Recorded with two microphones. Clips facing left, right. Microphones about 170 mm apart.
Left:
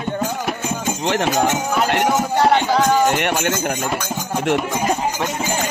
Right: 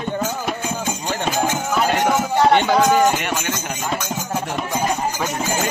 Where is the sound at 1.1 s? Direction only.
90° left.